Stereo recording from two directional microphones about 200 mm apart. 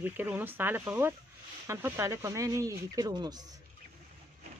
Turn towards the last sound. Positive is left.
turn(degrees=-20)  # may be behind; listen again after turning